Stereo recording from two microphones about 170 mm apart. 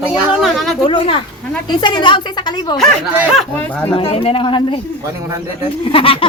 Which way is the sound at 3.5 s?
10° left (ahead or behind).